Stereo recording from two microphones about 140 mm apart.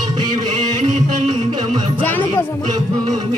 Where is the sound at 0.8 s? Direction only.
55° right (ahead or behind).